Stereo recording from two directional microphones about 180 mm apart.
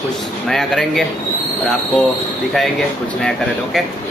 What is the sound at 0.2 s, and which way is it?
Speech, centre (ahead or behind).